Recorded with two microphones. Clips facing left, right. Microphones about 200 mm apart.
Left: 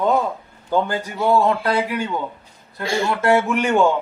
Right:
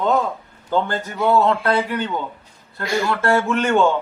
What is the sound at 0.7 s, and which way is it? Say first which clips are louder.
Speech: left 1 dB; 10° left (ahead or behind).